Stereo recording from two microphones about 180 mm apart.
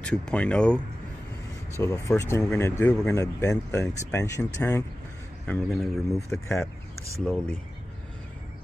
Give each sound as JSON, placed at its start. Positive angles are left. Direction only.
{"t": 0.0, "sound": "a man's voice", "side_deg": 5}
{"t": 1.8, "sound": "speech", "side_deg": 15}
{"t": 3.2, "sound": "speech", "side_deg": 15}
{"t": 5.5, "sound": "a man's voice", "side_deg": 0}